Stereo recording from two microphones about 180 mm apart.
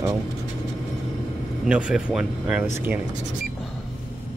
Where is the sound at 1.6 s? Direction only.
Centre (ahead or behind).